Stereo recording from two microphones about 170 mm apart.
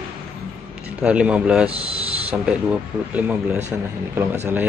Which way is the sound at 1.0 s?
5° right (ahead or behind).